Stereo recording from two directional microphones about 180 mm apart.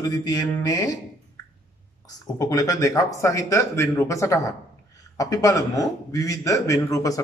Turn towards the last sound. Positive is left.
turn(degrees=20)  # may be behind; listen again after turning